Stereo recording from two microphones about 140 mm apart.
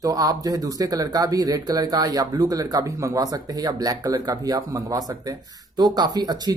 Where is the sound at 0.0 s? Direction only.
25° right (ahead or behind).